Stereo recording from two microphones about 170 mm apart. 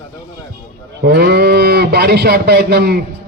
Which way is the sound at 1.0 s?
75° right (ahead or behind).